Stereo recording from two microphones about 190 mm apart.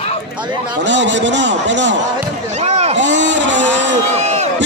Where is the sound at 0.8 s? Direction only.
70° right (ahead or behind).